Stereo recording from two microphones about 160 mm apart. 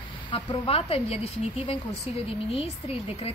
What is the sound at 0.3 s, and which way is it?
Speech, 35° left (ahead or behind).